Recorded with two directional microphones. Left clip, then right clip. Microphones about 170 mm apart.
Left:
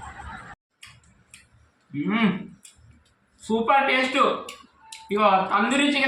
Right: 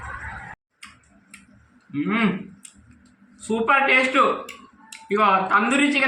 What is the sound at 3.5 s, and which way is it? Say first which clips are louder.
A man's voice: right 2 dB; 5° right (ahead or behind).